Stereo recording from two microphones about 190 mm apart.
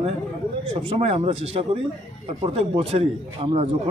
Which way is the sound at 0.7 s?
30° right (ahead or behind).